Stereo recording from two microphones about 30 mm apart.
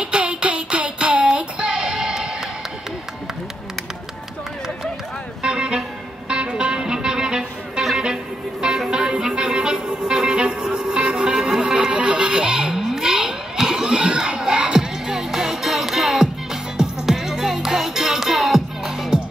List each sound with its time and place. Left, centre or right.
0.0 s music: right
0.9 s music: right
5.4 s music: right
8.7 s music: centre
9.1 s music: right
11.3 s music: centre
11.8 s music: right
13.0 s music: right